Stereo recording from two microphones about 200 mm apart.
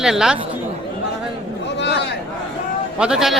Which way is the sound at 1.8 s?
60° left (ahead or behind).